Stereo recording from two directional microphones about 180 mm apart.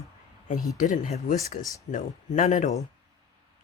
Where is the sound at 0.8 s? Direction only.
45° left (ahead or behind).